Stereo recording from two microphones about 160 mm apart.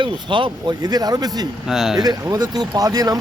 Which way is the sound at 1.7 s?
5° right (ahead or behind).